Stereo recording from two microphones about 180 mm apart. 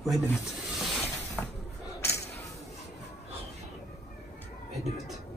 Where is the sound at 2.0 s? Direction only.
15° left (ahead or behind).